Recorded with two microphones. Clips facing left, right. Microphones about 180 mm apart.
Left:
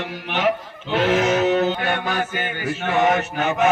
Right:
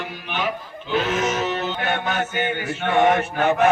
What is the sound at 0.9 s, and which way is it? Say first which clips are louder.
Music: left 4 dB; 70° left (ahead or behind).